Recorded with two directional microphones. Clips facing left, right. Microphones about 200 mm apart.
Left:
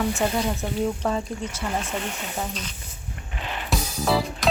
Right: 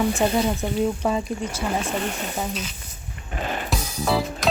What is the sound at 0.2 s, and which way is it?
Speech, 20° right (ahead or behind).